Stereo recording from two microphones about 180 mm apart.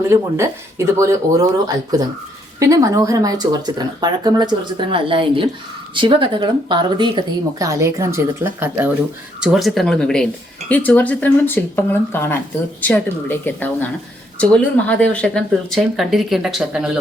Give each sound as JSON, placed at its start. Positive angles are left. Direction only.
{"t": 0.1, "sound": "speech", "side_deg": -15}
{"t": 9.4, "sound": "speech", "side_deg": 0}